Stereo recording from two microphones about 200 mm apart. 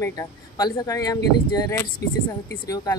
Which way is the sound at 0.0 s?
15° left (ahead or behind).